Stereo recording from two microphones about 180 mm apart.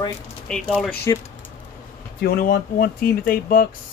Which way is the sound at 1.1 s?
20° left (ahead or behind).